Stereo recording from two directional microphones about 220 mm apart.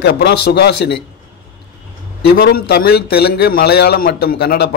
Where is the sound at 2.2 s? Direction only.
45° left (ahead or behind).